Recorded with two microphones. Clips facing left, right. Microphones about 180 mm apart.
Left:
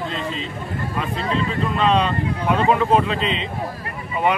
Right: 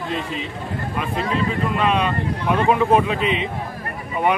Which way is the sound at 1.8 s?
10° right (ahead or behind).